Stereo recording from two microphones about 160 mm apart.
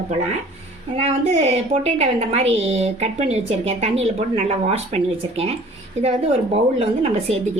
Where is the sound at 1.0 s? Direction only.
40° right (ahead or behind).